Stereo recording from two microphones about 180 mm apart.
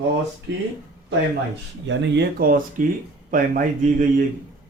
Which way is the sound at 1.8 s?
75° right (ahead or behind).